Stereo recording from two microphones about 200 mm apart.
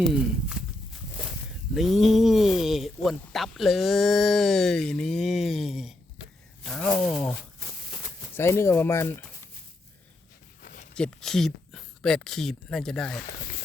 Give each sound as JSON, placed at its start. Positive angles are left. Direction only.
{"t": 0.0, "sound": "speech", "side_deg": -5}
{"t": 1.7, "sound": "speech", "side_deg": 0}
{"t": 8.4, "sound": "speech", "side_deg": 15}
{"t": 10.6, "sound": "a sound", "side_deg": 45}
{"t": 10.9, "sound": "speech", "side_deg": 5}